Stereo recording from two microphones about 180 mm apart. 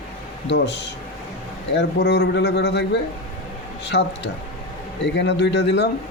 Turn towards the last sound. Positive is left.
turn(degrees=70)  # may be behind; listen again after turning